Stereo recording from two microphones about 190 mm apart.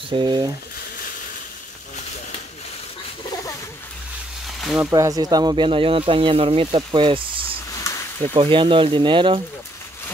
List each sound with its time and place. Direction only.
0.1 s speech: 25° right (ahead or behind)
4.7 s speech: 15° right (ahead or behind)